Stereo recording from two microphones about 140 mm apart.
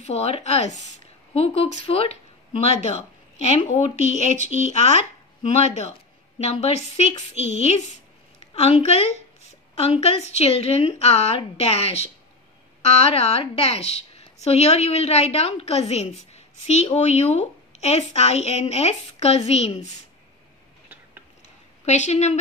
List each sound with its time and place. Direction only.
0.0 s a woman's voice: 50° left (ahead or behind)
21.8 s a woman's voice: 55° left (ahead or behind)